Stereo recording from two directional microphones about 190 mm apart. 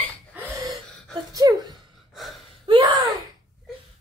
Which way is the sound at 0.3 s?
15° right (ahead or behind).